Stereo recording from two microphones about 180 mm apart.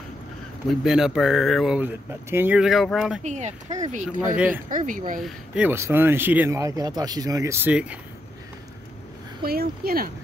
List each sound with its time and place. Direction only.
0.7 s speech: 5° right (ahead or behind)
3.3 s speech: 40° right (ahead or behind)
5.2 s speech: 5° right (ahead or behind)
9.4 s speech: 55° right (ahead or behind)